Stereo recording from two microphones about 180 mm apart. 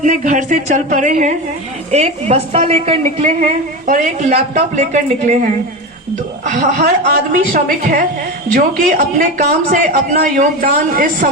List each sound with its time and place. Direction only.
0.0 s a woman's voice: 45° right (ahead or behind)
6.5 s a woman's voice: 50° right (ahead or behind)